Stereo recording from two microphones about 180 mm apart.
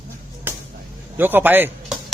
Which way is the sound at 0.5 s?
10° right (ahead or behind).